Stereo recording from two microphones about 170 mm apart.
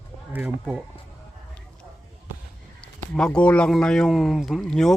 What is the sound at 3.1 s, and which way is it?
Speech, 5° left (ahead or behind).